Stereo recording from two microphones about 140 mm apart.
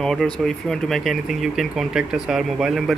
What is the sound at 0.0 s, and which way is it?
Speech, 5° left (ahead or behind).